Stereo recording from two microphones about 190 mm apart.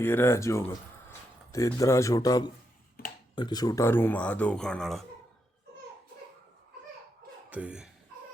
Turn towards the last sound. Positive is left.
turn(degrees=-5)  # may be behind; listen again after turning